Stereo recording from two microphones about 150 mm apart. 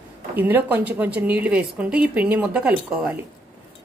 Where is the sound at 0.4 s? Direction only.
15° right (ahead or behind).